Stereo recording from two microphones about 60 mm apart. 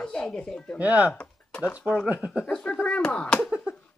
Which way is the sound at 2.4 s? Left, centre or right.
Centre.